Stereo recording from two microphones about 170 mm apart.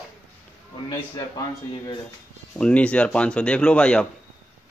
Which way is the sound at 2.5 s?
5° left (ahead or behind).